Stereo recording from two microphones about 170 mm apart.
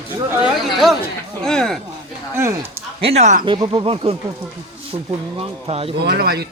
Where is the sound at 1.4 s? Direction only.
5° left (ahead or behind).